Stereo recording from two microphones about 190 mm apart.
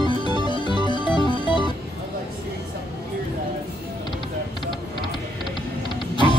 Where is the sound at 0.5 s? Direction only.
25° left (ahead or behind).